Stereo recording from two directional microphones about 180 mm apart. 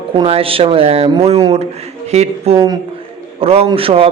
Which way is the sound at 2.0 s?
35° right (ahead or behind).